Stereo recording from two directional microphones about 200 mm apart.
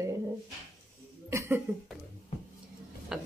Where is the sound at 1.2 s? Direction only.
15° right (ahead or behind).